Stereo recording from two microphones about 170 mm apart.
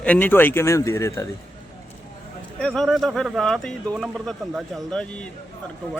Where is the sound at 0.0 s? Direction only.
10° left (ahead or behind).